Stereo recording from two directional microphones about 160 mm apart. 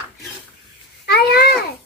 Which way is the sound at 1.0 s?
80° left.